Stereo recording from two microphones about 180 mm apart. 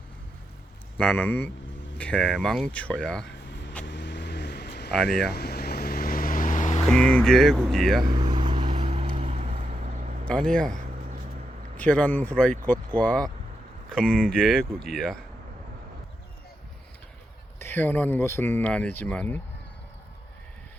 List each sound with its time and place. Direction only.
0.9 s speech: 5° left (ahead or behind)
3.2 s vehicle: 70° left (ahead or behind); by 6.8 s 45° left (ahead or behind)
6.8 s speech: 5° left (ahead or behind)
8.0 s vehicle: 25° right (ahead or behind); by 10.2 s 45° right (ahead or behind)
10.2 s speech: 5° left (ahead or behind)
11.8 s speech: 10° left (ahead or behind)
17.6 s speech: 10° left (ahead or behind)